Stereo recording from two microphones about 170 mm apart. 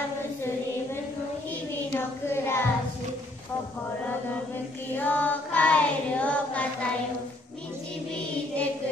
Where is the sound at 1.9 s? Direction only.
15° left (ahead or behind).